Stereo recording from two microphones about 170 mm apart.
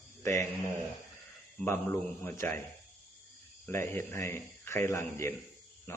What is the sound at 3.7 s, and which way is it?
A man's voice, 15° left (ahead or behind).